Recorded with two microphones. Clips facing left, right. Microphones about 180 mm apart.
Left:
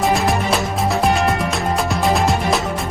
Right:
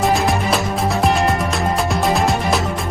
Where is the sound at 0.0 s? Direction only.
Centre (ahead or behind).